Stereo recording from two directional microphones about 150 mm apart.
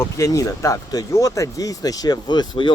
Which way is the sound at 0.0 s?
20° left (ahead or behind).